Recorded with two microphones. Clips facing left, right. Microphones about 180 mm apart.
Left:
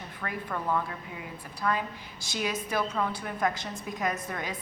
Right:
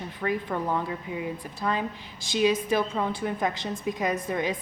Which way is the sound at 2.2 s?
20° right (ahead or behind).